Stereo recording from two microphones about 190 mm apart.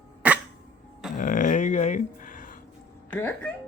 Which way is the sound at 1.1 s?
45° left (ahead or behind).